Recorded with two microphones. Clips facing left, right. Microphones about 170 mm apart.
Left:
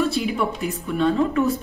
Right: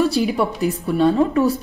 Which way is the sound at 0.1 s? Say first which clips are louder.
Right 4 dB; 35° right (ahead or behind).